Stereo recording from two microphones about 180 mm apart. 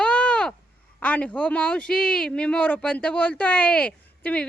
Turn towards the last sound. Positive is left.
turn(degrees=10)  # may be behind; listen again after turning